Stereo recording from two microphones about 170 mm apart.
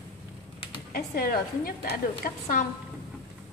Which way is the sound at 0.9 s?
60° left (ahead or behind).